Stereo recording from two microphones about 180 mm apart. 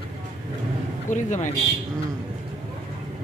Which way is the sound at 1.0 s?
45° left (ahead or behind).